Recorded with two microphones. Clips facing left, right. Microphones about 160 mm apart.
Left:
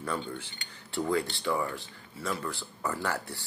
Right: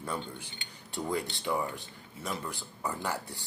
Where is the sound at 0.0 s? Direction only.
15° right (ahead or behind).